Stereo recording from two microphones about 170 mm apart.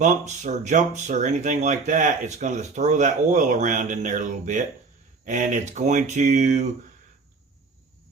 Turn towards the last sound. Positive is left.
turn(degrees=-45)  # may be behind; listen again after turning